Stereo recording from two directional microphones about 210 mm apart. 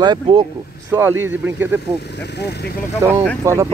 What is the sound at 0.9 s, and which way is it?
Speech, 10° right (ahead or behind).